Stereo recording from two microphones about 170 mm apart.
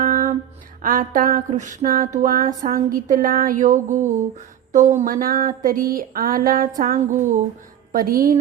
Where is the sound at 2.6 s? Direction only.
55° right (ahead or behind).